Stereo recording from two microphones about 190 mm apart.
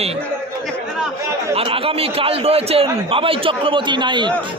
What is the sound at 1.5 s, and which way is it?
A man's voice, 30° right (ahead or behind).